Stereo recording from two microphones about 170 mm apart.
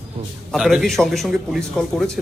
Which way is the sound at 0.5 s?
Centre (ahead or behind).